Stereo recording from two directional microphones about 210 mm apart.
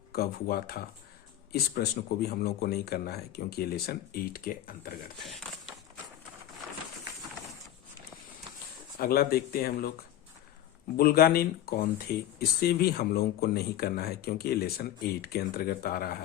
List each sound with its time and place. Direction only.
0.1 s speech: 45° left (ahead or behind)
5.2 s a sound: centre (ahead or behind)
9.0 s speech: 45° left (ahead or behind)
10.9 s speech: 45° left (ahead or behind)